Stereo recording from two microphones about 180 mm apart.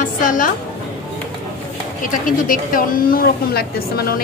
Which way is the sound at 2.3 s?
50° left (ahead or behind).